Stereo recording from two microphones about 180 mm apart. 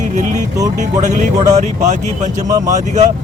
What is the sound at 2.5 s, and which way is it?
Speech, 20° right (ahead or behind).